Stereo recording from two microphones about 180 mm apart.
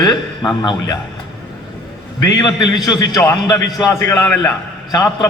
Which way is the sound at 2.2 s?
20° left (ahead or behind).